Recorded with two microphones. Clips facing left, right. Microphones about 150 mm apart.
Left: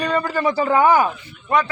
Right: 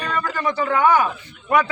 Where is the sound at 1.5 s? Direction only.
10° right (ahead or behind).